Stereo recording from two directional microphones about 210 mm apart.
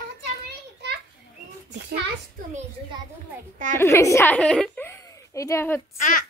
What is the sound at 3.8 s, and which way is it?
A woman's voice, 15° left (ahead or behind).